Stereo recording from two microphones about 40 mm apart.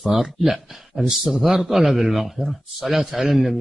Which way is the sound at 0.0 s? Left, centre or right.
Centre.